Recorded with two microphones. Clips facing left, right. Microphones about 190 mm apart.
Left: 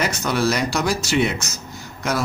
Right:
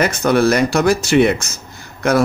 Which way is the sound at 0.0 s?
55° right (ahead or behind).